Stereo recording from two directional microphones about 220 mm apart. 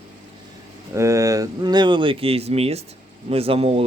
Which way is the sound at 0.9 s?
15° right (ahead or behind).